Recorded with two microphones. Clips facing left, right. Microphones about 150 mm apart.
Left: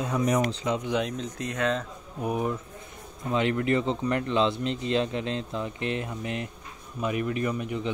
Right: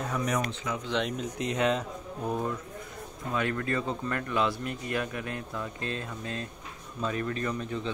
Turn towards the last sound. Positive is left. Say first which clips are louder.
# left 3 dB
turn(degrees=15)  # may be behind; listen again after turning